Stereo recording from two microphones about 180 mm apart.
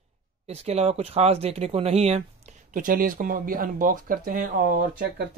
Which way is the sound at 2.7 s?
50° right (ahead or behind).